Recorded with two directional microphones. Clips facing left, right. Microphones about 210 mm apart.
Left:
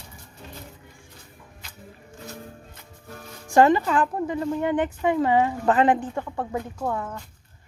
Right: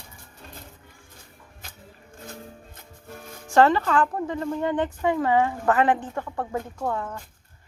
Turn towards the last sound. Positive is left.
turn(degrees=5)  # may be behind; listen again after turning